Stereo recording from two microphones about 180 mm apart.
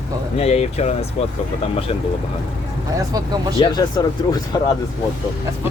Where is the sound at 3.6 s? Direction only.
25° left (ahead or behind).